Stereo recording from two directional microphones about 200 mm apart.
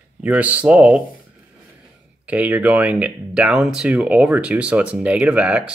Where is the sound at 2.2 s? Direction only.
5° right (ahead or behind).